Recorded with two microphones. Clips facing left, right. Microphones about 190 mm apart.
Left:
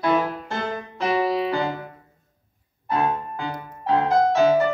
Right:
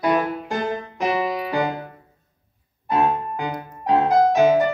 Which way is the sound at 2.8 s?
20° right (ahead or behind).